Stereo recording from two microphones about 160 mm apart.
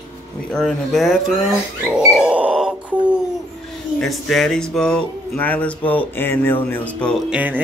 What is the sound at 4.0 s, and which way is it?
Speech, centre (ahead or behind).